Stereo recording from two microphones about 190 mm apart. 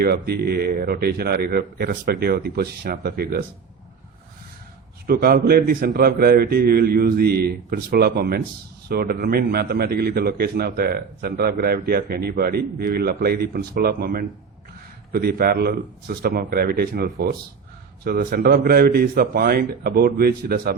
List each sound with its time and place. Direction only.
0.0 s a man's voice: 55° right (ahead or behind)
5.0 s a man's voice: 50° right (ahead or behind)